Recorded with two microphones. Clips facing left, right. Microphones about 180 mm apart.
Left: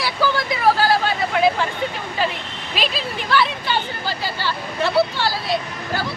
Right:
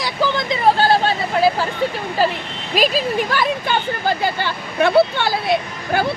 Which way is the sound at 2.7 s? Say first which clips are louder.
Right 8 dB; 45° right (ahead or behind).